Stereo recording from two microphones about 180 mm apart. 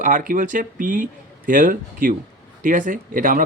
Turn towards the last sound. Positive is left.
turn(degrees=-50)  # may be behind; listen again after turning